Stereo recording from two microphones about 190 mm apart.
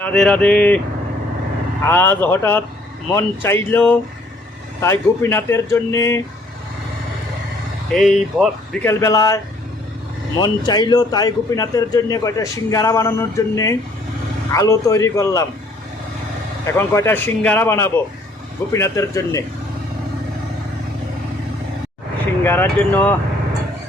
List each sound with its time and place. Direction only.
0.0 s speech: 5° left (ahead or behind)
1.8 s a man's voice: 10° left (ahead or behind)
7.9 s speech: 5° left (ahead or behind)
8.9 s a man's voice: 15° left (ahead or behind)
10.4 s a man's voice: 20° left (ahead or behind)
16.6 s a man's voice: 15° left (ahead or behind)
22.4 s a man's voice: 10° left (ahead or behind)